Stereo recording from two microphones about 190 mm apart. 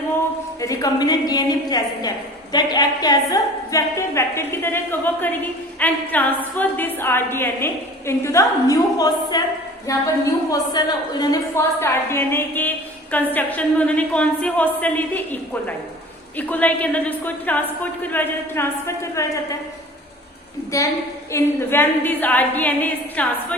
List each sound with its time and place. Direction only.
0.6 s a woman's voice: 20° left (ahead or behind)
10.5 s a woman's voice: 20° left (ahead or behind)
20.7 s a woman's voice: 15° left (ahead or behind)